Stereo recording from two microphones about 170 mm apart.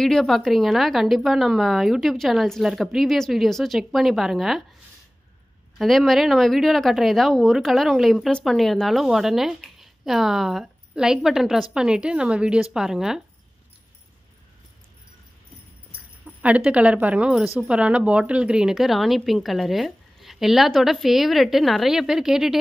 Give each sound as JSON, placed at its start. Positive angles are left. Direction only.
{"t": 0.0, "sound": "a woman's voice", "side_deg": 5}
{"t": 5.8, "sound": "a woman's voice", "side_deg": 0}
{"t": 16.3, "sound": "a woman's voice", "side_deg": -5}